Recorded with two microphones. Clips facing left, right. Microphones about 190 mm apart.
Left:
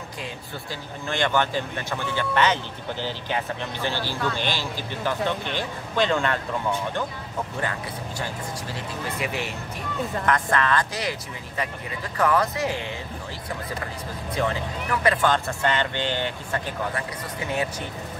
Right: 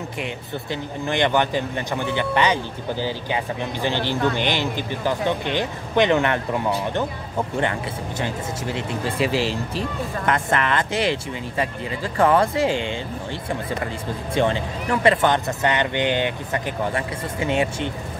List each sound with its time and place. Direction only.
0.2 s speech: 20° right (ahead or behind)
8.7 s speech: 30° right (ahead or behind)
9.3 s speech: 90° right
9.8 s speech: 25° right (ahead or behind)
14.3 s speech: 25° right (ahead or behind)